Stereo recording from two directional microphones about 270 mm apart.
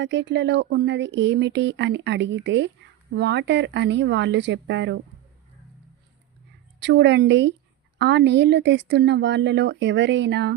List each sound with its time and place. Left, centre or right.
0.0 s speech: right
6.8 s speech: right